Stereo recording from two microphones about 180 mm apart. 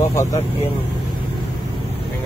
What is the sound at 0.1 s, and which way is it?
Speech, 15° left (ahead or behind).